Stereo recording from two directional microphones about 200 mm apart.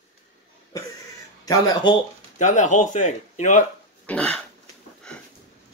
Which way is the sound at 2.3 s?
35° left (ahead or behind).